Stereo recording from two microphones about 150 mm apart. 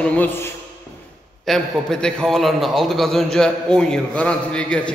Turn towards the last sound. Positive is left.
turn(degrees=5)  # may be behind; listen again after turning